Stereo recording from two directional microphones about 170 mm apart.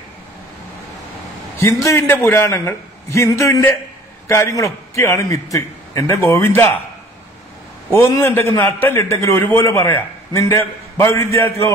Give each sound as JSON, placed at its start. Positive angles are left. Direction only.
{"t": 1.6, "sound": "a man's voice", "side_deg": 15}
{"t": 7.9, "sound": "a man's voice", "side_deg": 15}